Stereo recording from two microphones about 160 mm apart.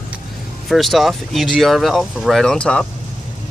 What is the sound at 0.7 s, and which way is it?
Speech, centre (ahead or behind).